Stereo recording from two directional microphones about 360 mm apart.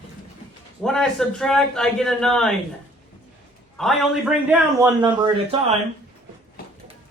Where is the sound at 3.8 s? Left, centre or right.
Centre.